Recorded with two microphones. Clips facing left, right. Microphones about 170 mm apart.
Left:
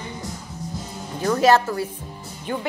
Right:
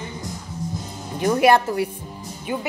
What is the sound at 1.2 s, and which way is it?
A woman's voice, 15° right (ahead or behind).